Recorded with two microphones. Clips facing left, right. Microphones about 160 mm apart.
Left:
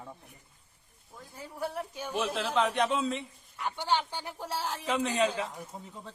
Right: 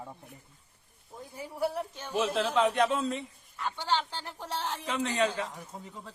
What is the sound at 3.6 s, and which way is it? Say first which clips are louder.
A man's voice: left 1 dB; 15° left (ahead or behind).